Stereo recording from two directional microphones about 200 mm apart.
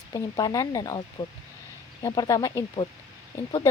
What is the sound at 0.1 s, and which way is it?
Speech, 20° left (ahead or behind).